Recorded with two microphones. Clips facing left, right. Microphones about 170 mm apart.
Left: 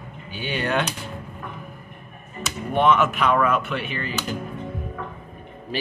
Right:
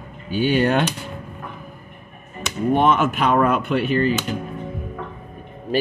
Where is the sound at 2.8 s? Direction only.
35° right (ahead or behind).